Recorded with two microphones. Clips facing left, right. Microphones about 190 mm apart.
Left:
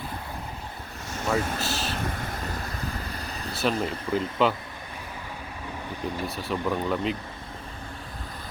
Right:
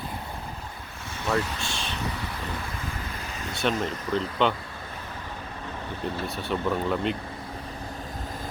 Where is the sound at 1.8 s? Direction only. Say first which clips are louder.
Left 1 dB; 45° left (ahead or behind).